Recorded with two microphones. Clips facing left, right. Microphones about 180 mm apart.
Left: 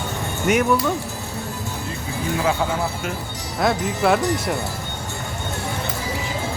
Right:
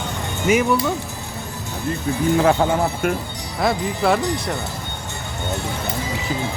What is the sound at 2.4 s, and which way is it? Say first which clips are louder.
Speech: right 3 dB; 55° right (ahead or behind).